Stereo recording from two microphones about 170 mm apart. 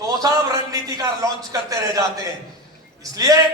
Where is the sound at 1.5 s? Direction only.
20° right (ahead or behind).